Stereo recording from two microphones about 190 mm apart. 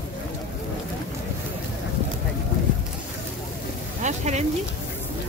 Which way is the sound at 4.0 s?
40° right (ahead or behind).